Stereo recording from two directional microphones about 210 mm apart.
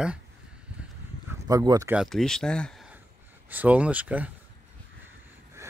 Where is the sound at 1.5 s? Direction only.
15° right (ahead or behind).